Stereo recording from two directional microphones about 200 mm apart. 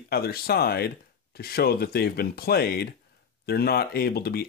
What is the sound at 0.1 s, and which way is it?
Speech, 50° left (ahead or behind).